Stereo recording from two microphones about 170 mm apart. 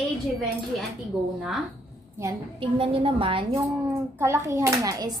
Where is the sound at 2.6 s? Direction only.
30° right (ahead or behind).